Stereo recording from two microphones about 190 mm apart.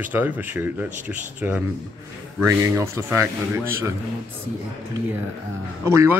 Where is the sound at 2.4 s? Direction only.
15° right (ahead or behind).